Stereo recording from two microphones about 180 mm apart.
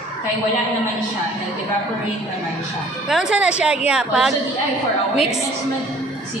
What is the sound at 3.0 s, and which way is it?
Speech, 5° right (ahead or behind).